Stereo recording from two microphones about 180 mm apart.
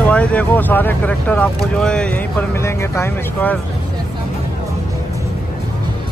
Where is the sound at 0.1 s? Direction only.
5° left (ahead or behind).